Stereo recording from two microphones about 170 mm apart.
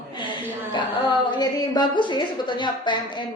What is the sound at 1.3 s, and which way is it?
A woman's voice, 25° left (ahead or behind).